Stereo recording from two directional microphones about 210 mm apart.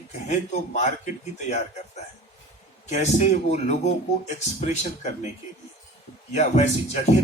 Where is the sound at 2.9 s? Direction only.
35° left (ahead or behind).